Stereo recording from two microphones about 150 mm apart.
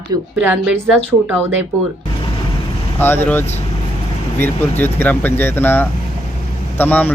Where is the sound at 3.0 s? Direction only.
15° left (ahead or behind).